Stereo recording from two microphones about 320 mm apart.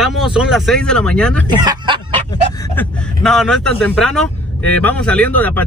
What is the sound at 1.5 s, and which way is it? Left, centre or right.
Speech, centre.